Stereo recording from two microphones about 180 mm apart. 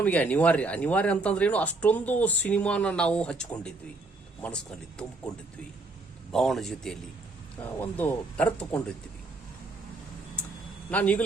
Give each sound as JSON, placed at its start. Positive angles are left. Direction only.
{"t": 0.0, "sound": "speech", "side_deg": 10}
{"t": 6.3, "sound": "speech", "side_deg": 0}
{"t": 10.9, "sound": "speech", "side_deg": 10}